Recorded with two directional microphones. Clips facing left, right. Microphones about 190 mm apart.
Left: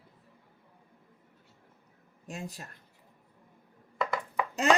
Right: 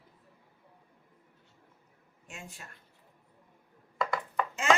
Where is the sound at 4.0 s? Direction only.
5° left (ahead or behind).